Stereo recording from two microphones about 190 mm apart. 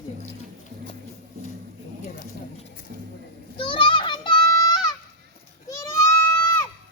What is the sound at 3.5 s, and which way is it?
Children playing, 25° left (ahead or behind).